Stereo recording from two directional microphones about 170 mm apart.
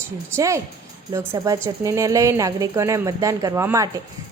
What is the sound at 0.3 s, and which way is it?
A woman's voice, 15° right (ahead or behind).